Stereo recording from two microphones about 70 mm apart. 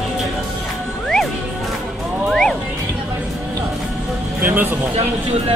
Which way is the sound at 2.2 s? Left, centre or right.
Centre.